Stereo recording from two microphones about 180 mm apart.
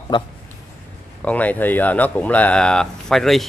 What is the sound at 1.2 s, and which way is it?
A man's voice, 10° left (ahead or behind).